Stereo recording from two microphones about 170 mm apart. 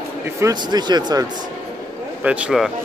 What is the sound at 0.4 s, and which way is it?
Speech, 25° right (ahead or behind).